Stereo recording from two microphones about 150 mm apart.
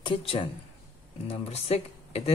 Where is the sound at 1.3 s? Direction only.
45° left (ahead or behind).